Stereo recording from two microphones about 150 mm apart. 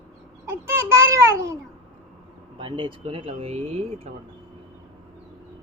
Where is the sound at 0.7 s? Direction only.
20° right (ahead or behind).